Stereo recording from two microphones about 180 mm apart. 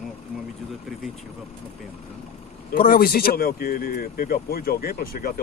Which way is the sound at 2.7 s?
55° left (ahead or behind).